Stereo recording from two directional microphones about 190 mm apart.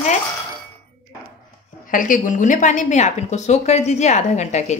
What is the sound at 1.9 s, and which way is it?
A woman's voice, 45° left (ahead or behind).